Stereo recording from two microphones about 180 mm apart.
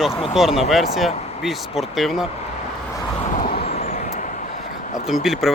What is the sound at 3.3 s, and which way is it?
Vehicle, 50° left (ahead or behind).